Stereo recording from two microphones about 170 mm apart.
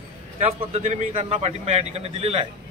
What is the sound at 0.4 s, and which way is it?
A man's voice, 40° right (ahead or behind).